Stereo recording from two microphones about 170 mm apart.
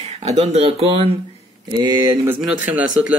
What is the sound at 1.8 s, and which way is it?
Speech, 25° right (ahead or behind).